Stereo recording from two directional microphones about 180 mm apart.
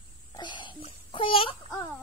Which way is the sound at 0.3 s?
25° left (ahead or behind).